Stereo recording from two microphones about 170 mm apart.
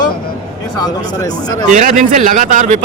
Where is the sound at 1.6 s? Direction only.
45° right (ahead or behind).